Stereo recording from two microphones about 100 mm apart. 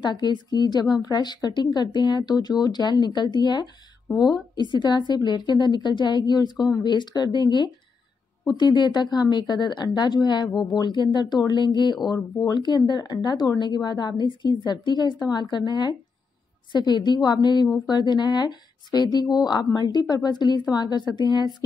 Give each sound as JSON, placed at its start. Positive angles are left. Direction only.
{"t": 0.0, "sound": "a woman's voice", "side_deg": 45}